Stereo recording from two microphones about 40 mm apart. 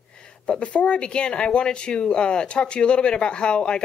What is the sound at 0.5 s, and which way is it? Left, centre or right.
Speech, left.